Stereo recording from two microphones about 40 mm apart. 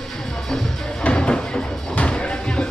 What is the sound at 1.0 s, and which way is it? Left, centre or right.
Music, left.